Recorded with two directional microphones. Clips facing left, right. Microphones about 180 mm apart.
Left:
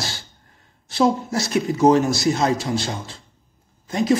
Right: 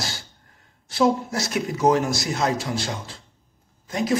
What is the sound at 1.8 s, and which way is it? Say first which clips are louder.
A man's voice: left 4 dB; 30° left (ahead or behind).